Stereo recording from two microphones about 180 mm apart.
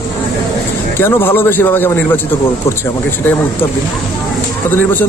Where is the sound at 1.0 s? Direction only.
10° left (ahead or behind).